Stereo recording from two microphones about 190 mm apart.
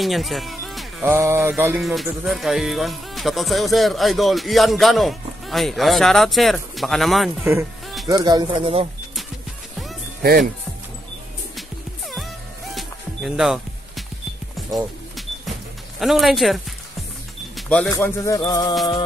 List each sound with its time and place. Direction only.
0.0 s speech: centre (ahead or behind)
1.0 s music: 15° right (ahead or behind)
1.8 s speech: centre (ahead or behind)
8.1 s speech: 20° right (ahead or behind)
12.7 s music: centre (ahead or behind)
16.0 s speech: centre (ahead or behind)
17.6 s music: 5° left (ahead or behind)